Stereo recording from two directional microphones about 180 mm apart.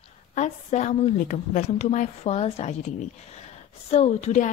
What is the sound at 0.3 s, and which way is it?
Speech, 40° left (ahead or behind).